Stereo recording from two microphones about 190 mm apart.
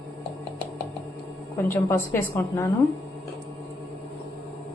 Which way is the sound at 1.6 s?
15° left (ahead or behind).